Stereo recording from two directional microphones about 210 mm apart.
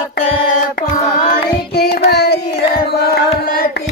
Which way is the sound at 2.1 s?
50° left (ahead or behind).